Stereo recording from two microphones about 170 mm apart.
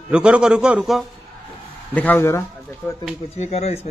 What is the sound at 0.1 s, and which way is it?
Speech, 5° right (ahead or behind).